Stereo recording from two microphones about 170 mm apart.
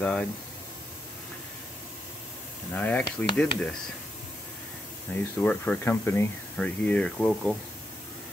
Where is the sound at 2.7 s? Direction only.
10° left (ahead or behind).